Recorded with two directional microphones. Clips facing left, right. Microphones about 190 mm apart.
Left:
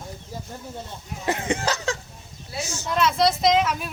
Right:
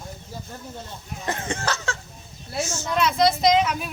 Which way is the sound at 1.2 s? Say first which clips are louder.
Left 3 dB; 15° left (ahead or behind).